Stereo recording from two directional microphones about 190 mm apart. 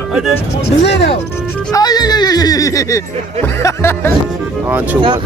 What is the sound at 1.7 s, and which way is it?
Speech, 20° left (ahead or behind).